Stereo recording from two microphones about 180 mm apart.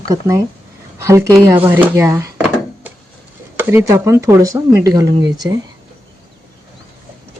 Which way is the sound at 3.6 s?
10° right (ahead or behind).